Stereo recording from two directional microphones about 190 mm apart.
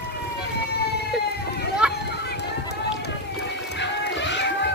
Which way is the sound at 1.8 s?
5° right (ahead or behind).